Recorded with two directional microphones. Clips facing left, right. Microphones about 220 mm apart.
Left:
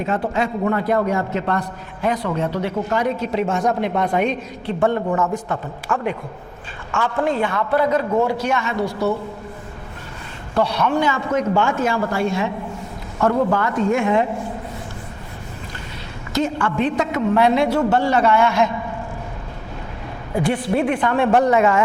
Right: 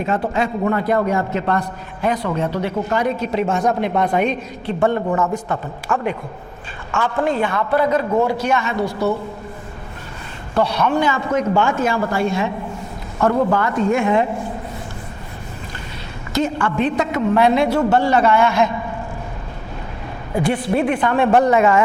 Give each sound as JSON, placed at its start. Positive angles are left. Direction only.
{"t": 0.0, "sound": "a woman's voice", "side_deg": -15}
{"t": 8.4, "sound": "a woman's voice", "side_deg": -15}
{"t": 8.8, "sound": "a man's voice", "side_deg": -35}
{"t": 10.5, "sound": "a woman's voice", "side_deg": -10}
{"t": 13.1, "sound": "speech", "side_deg": -25}
{"t": 16.3, "sound": "a woman's voice", "side_deg": -15}
{"t": 20.3, "sound": "a woman's voice", "side_deg": -15}